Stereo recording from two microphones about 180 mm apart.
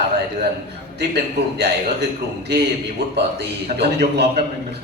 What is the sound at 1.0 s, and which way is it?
A man's voice, 70° right (ahead or behind).